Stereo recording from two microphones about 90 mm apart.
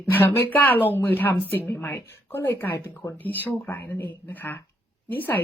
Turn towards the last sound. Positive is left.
turn(degrees=20)  # may be behind; listen again after turning